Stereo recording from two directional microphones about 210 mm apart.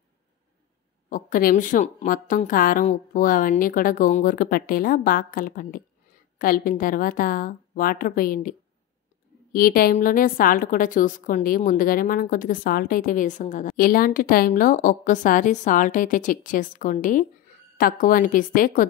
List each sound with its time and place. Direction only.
1.1 s a woman's voice: 40° left (ahead or behind)